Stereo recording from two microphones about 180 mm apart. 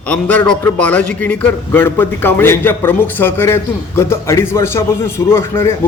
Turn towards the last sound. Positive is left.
turn(degrees=15)  # may be behind; listen again after turning